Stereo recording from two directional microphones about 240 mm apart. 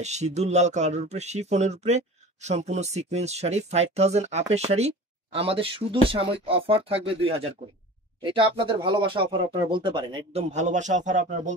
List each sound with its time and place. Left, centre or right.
0.0 s speech: right